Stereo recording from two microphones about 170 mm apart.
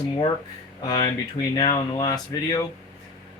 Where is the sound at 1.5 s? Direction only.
25° left (ahead or behind).